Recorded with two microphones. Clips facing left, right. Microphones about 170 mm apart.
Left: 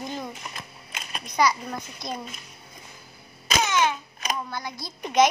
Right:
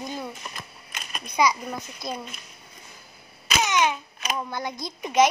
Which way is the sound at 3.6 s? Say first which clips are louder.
Right 1 dB; 15° right (ahead or behind).